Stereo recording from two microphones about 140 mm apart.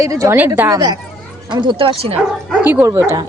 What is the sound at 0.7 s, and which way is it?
Speech, 30° right (ahead or behind).